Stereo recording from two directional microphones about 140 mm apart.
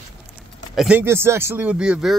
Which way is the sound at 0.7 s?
5° right (ahead or behind).